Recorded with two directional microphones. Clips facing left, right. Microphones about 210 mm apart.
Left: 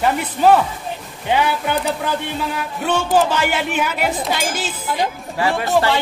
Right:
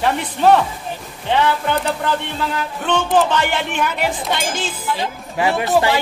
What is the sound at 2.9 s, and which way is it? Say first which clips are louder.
Speech: even; 5° left (ahead or behind).